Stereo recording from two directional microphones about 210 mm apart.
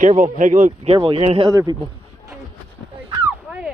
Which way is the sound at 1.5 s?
15° right (ahead or behind).